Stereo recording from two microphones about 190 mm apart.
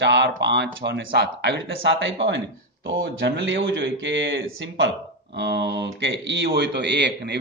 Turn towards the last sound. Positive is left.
turn(degrees=-65)  # may be behind; listen again after turning